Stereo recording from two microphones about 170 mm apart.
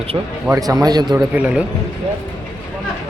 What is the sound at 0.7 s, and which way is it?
Speech, 20° right (ahead or behind).